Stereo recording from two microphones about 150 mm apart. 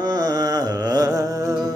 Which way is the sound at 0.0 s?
25° right (ahead or behind).